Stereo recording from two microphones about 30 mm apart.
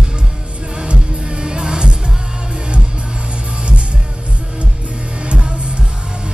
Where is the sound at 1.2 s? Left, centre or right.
Right.